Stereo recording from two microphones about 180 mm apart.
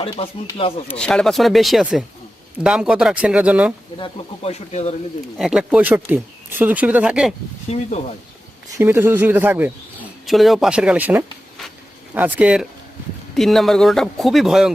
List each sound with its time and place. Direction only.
0.2 s speech: 30° left (ahead or behind)
0.9 s speech: 5° left (ahead or behind)
3.9 s speech: 30° left (ahead or behind)
5.4 s speech: 5° right (ahead or behind)
7.7 s speech: 35° left (ahead or behind)
8.7 s speech: 10° right (ahead or behind)
10.2 s speech: centre (ahead or behind)